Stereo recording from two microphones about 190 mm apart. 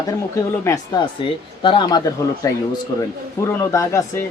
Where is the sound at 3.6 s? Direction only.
15° left (ahead or behind).